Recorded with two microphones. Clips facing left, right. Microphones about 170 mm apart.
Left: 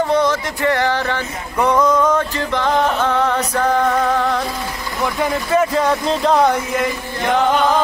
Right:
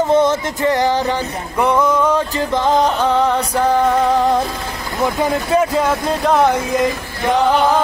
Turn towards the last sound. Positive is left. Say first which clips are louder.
# even
turn(degrees=-5)  # may be behind; listen again after turning